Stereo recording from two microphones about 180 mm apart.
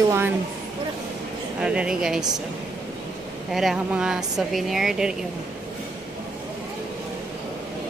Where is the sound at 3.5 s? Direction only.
Centre (ahead or behind).